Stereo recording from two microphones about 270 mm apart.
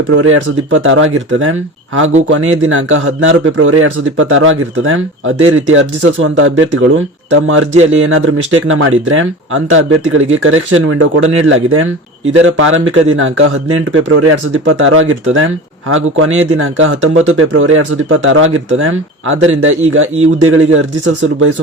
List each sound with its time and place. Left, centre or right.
0.2 s speech: right